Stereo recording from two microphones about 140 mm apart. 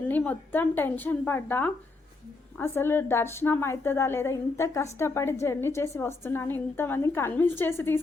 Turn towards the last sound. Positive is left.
turn(degrees=15)  # may be behind; listen again after turning